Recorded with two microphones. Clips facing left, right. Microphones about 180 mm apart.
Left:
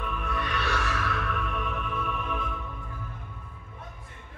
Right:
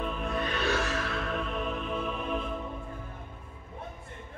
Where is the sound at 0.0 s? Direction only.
30° right (ahead or behind).